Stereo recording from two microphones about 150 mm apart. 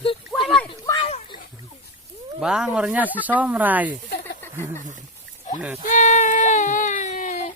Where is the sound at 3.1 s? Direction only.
10° left (ahead or behind).